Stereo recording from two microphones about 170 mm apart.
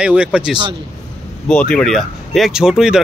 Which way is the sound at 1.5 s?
5° left (ahead or behind).